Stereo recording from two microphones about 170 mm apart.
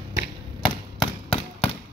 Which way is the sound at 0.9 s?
35° left (ahead or behind).